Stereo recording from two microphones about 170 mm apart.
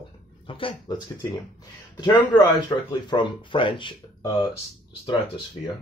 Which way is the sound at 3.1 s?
30° left (ahead or behind).